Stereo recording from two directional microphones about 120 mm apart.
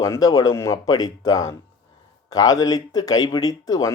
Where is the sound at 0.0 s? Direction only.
25° left (ahead or behind).